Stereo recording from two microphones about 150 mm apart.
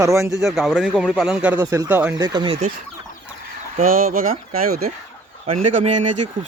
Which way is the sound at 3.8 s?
70° right (ahead or behind).